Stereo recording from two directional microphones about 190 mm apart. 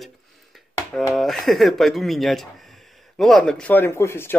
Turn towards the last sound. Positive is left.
turn(degrees=15)  # may be behind; listen again after turning